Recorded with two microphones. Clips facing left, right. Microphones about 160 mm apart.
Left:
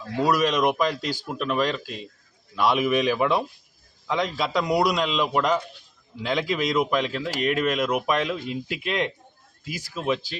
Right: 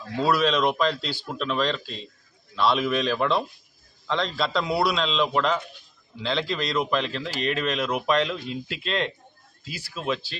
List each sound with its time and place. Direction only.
0.2 s speech: 15° left (ahead or behind)